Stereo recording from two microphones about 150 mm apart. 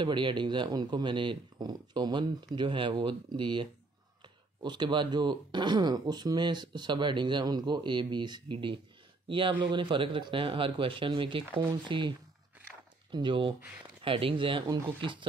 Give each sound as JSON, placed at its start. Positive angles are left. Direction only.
{"t": 0.0, "sound": "speech", "side_deg": -30}
{"t": 13.1, "sound": "speech", "side_deg": -30}